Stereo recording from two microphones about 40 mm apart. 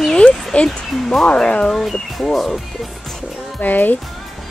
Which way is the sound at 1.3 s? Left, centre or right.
Left.